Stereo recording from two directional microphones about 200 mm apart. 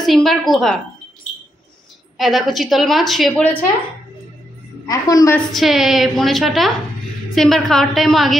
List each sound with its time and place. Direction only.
0.0 s a woman's voice: centre (ahead or behind)
2.1 s a woman's voice: centre (ahead or behind)
4.8 s a woman's voice: 15° left (ahead or behind)
5.5 s a woman's voice: centre (ahead or behind)